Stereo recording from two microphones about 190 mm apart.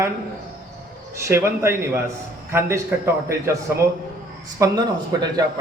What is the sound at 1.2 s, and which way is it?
Speech, 15° right (ahead or behind).